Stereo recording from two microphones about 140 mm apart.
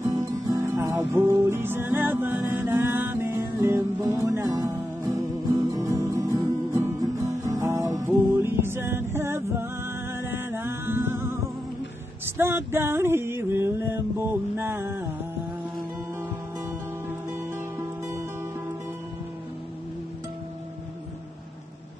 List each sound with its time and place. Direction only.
0.0 s music: 25° right (ahead or behind)
17.3 s music: 20° right (ahead or behind)